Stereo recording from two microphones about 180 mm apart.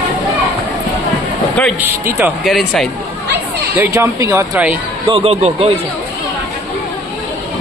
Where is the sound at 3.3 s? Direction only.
10° right (ahead or behind).